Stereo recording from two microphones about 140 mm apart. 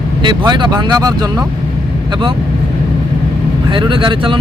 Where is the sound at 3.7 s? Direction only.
35° right (ahead or behind).